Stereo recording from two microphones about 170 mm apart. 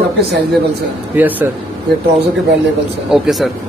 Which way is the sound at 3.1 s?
Centre (ahead or behind).